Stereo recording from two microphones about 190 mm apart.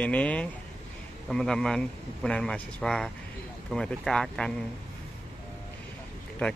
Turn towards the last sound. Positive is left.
turn(degrees=5)  # may be behind; listen again after turning